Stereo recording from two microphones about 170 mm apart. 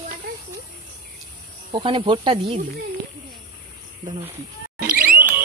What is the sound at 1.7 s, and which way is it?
Speech, 30° right (ahead or behind).